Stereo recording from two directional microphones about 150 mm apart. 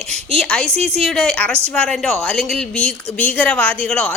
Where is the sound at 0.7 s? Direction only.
45° right (ahead or behind).